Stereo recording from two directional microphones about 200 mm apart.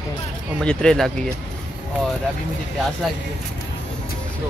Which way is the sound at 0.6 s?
5° left (ahead or behind).